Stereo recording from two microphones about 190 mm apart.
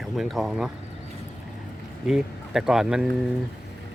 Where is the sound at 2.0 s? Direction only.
Centre (ahead or behind).